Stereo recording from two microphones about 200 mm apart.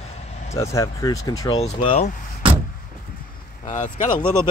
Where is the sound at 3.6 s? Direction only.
40° left (ahead or behind).